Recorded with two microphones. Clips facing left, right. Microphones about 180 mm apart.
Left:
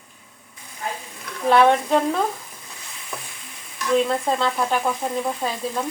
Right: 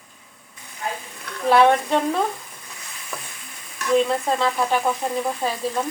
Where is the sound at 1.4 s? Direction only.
Centre (ahead or behind).